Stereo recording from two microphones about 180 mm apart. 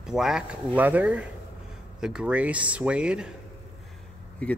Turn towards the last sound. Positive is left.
turn(degrees=5)  # may be behind; listen again after turning